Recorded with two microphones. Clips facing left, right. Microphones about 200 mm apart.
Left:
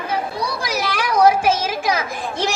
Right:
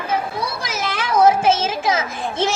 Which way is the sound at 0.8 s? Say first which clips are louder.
Even; 25° right (ahead or behind).